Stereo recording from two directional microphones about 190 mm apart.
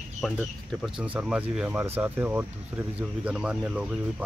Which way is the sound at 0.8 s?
5° right (ahead or behind).